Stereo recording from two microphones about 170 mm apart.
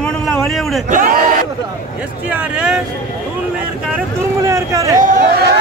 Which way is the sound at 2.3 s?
5° right (ahead or behind).